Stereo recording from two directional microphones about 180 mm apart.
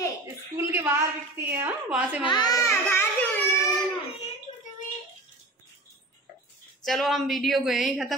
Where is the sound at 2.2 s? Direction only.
25° left (ahead or behind).